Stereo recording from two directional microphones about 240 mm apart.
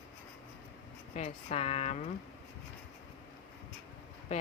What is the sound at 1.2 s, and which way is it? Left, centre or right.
Speech, left.